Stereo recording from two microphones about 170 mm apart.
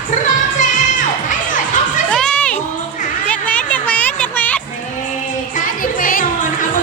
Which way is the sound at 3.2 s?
10° left (ahead or behind).